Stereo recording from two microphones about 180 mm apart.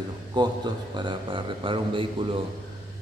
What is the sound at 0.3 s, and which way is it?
Speech, 25° right (ahead or behind).